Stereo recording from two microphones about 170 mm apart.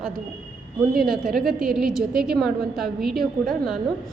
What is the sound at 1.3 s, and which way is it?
A woman's voice, centre (ahead or behind).